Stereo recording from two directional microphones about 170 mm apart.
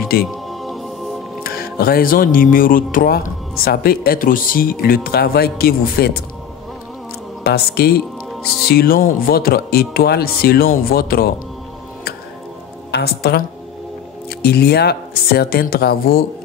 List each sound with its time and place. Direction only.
0.3 s music: centre (ahead or behind)
1.4 s speech: 60° left (ahead or behind)
7.4 s speech: 70° left (ahead or behind)
12.9 s speech: 70° left (ahead or behind)